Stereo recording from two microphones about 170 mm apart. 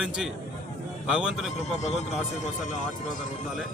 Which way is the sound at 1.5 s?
40° left (ahead or behind).